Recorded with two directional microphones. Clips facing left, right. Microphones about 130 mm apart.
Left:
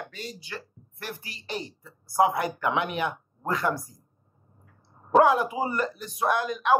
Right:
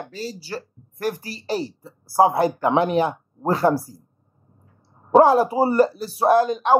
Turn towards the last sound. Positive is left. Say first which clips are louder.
# right 8 dB
turn(degrees=-30)  # may be behind; listen again after turning